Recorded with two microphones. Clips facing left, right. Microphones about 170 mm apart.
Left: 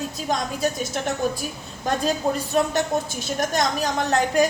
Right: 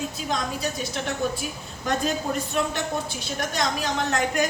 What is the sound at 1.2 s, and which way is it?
Speech, 45° left (ahead or behind).